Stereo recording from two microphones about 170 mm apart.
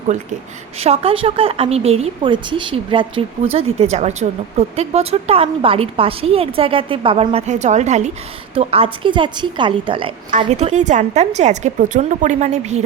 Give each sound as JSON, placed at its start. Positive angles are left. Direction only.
{"t": 0.8, "sound": "a woman's voice", "side_deg": -35}